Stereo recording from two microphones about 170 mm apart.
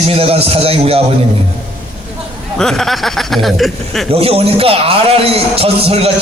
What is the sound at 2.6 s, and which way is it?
Speech, 5° left (ahead or behind).